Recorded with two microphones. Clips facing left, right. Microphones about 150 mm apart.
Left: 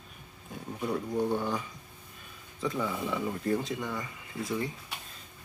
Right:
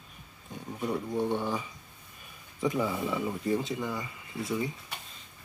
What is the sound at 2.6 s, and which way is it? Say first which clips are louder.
Speech: right 3 dB; 15° right (ahead or behind).